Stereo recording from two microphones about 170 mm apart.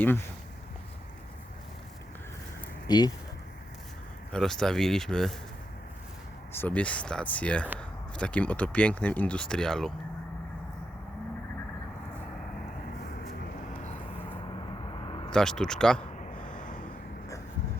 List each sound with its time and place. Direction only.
2.8 s speech: 25° left (ahead or behind)
4.3 s speech: 5° left (ahead or behind)
6.5 s speech: 10° left (ahead or behind)
15.0 s vehicle: 30° left (ahead or behind)
15.3 s speech: 5° left (ahead or behind)
16.3 s a sound: 50° left (ahead or behind)